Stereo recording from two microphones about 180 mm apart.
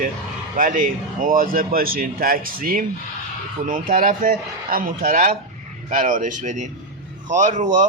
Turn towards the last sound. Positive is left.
turn(degrees=-45)  # may be behind; listen again after turning